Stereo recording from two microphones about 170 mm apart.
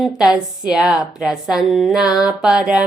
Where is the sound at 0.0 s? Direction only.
5° right (ahead or behind).